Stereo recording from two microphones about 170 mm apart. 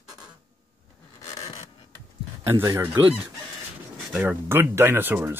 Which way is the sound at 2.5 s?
15° right (ahead or behind).